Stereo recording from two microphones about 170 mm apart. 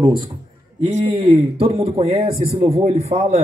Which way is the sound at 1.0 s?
30° right (ahead or behind).